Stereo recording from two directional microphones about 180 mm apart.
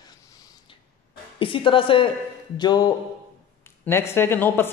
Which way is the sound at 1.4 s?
30° left (ahead or behind).